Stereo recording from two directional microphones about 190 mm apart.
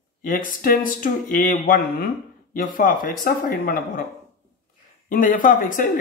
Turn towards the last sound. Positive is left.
turn(degrees=45)  # may be behind; listen again after turning